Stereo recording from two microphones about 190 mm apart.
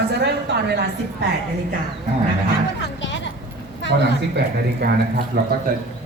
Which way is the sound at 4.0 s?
60° right (ahead or behind).